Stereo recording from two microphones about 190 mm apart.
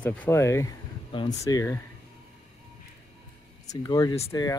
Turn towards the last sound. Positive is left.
turn(degrees=20)  # may be behind; listen again after turning